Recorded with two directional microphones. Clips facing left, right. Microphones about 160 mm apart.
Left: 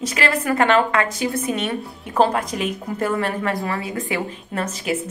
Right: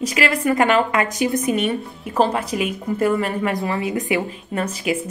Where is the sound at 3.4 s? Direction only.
20° right (ahead or behind).